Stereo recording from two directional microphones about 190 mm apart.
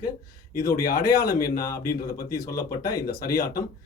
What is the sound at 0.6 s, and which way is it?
A man's voice, 50° left (ahead or behind).